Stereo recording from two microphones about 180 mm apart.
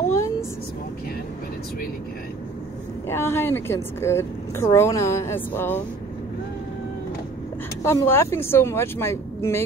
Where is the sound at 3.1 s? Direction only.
15° left (ahead or behind).